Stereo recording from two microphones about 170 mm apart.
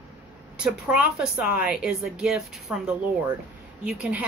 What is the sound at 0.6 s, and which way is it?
A woman's voice, 5° right (ahead or behind).